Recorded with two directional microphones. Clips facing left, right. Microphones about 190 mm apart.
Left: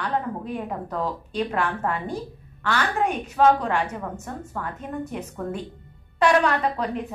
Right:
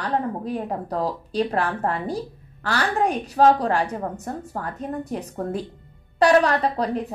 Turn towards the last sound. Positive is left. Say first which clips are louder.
# right 2 dB
turn(degrees=-35)  # may be behind; listen again after turning